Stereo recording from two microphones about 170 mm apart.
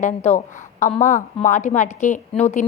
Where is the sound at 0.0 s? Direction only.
45° left (ahead or behind).